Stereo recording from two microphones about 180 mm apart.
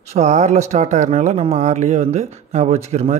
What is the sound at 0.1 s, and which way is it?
Speech, 40° right (ahead or behind).